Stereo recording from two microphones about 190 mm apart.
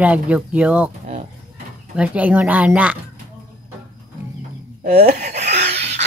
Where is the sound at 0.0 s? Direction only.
5° right (ahead or behind).